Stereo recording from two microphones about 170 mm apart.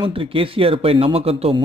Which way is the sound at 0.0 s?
30° right (ahead or behind).